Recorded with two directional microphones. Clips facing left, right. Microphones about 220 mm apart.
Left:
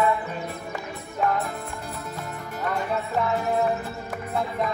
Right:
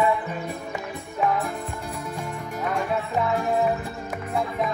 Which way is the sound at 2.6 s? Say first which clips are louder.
Right 1 dB; centre (ahead or behind).